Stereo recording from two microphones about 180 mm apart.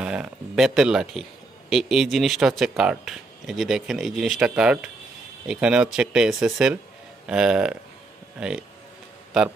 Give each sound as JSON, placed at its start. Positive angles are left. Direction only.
{"t": 0.0, "sound": "speech", "side_deg": -5}